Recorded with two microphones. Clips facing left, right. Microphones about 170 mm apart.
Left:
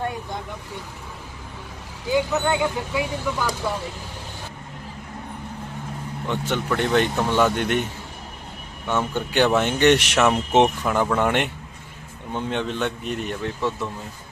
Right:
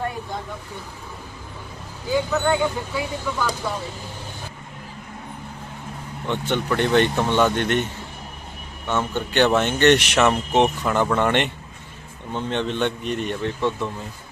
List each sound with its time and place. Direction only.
2.5 s speech: 10° left (ahead or behind)
6.2 s speech: 5° left (ahead or behind)
8.9 s speech: 10° left (ahead or behind)
10.3 s speech: 20° left (ahead or behind)
10.8 s speech: 5° left (ahead or behind)